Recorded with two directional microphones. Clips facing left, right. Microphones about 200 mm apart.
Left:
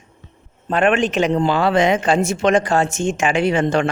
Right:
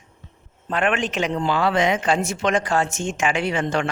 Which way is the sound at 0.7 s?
30° left (ahead or behind).